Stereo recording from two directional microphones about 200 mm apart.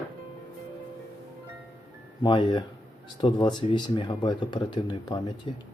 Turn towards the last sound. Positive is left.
turn(degrees=25)  # may be behind; listen again after turning